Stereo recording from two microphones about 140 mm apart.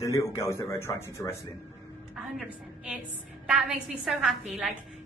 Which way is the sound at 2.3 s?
5° right (ahead or behind).